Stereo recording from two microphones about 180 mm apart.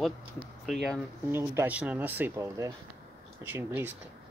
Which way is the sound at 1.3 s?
15° right (ahead or behind).